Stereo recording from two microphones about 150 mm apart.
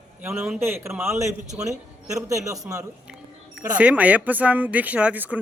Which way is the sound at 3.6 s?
10° right (ahead or behind).